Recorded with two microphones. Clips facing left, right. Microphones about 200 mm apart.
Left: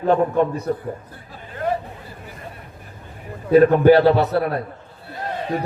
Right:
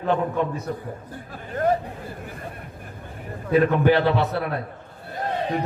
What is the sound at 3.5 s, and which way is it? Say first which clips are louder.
A man's voice: left 6 dB; 40° left (ahead or behind).